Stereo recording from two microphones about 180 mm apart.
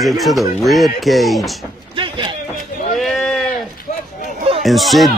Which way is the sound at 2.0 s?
25° right (ahead or behind).